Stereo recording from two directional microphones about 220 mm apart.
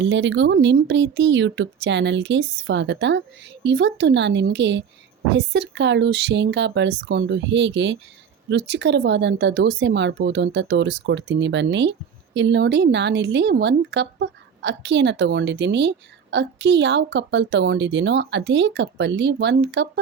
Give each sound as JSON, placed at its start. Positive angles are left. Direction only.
{"t": 0.0, "sound": "speech", "side_deg": -55}